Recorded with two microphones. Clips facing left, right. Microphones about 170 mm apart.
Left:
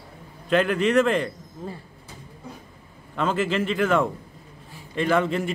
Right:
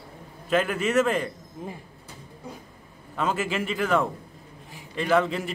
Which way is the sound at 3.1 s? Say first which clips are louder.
Left 3 dB; 5° right (ahead or behind).